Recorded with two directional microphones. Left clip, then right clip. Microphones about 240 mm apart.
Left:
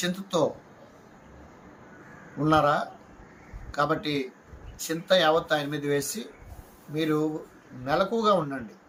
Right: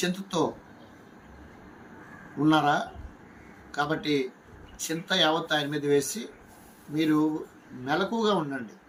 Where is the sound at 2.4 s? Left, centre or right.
Centre.